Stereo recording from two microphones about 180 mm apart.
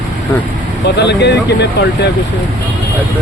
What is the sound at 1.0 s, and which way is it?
Speech, 70° left (ahead or behind).